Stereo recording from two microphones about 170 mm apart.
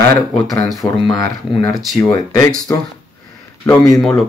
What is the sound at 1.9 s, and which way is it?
Speech, 15° left (ahead or behind).